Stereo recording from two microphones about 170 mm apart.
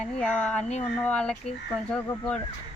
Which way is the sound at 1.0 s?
5° left (ahead or behind).